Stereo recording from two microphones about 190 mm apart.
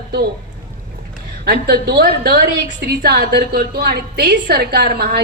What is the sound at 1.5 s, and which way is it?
A woman's voice, 55° right (ahead or behind).